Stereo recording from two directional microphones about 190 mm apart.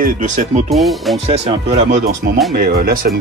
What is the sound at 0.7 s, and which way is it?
Speech, centre (ahead or behind).